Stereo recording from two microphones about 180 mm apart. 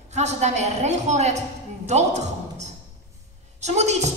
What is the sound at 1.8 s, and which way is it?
Music, 40° right (ahead or behind).